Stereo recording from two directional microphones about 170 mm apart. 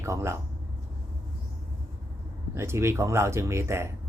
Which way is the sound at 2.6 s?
15° right (ahead or behind).